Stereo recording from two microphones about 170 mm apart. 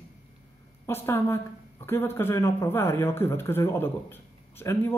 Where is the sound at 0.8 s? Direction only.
15° left (ahead or behind).